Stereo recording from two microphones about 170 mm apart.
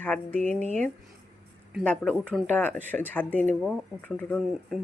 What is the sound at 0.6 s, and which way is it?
Speech, 45° right (ahead or behind).